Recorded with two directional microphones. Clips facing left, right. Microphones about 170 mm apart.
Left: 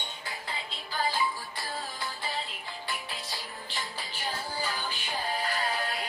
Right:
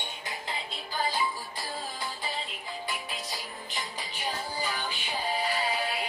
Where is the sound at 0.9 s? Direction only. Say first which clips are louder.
Even; 20° right (ahead or behind).